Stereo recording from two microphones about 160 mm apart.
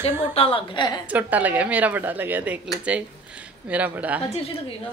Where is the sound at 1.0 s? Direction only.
10° right (ahead or behind).